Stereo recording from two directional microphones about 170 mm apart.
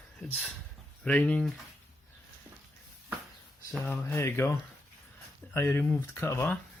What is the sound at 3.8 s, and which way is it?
Speech, 15° left (ahead or behind).